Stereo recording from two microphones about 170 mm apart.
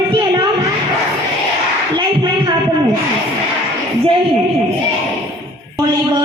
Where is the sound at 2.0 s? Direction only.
25° right (ahead or behind).